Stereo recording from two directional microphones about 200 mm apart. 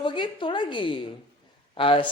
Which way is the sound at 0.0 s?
25° left (ahead or behind).